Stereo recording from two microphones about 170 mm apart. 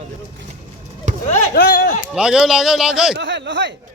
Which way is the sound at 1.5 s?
65° left (ahead or behind).